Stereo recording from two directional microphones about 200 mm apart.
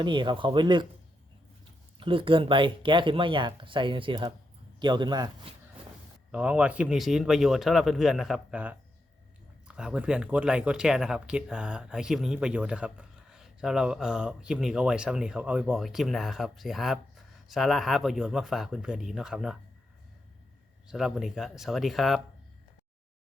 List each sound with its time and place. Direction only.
0.0 s speech: 25° right (ahead or behind)
2.0 s speech: 25° right (ahead or behind)
6.3 s speech: 5° right (ahead or behind)
20.8 s speech: centre (ahead or behind)